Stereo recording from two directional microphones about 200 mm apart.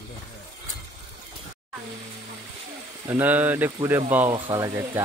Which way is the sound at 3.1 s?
10° right (ahead or behind).